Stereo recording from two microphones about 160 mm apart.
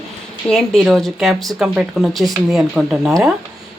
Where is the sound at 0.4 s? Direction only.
5° left (ahead or behind).